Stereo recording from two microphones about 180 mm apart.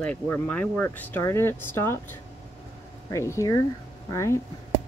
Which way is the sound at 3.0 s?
15° left (ahead or behind).